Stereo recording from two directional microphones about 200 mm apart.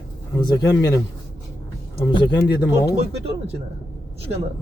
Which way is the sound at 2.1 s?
20° left (ahead or behind).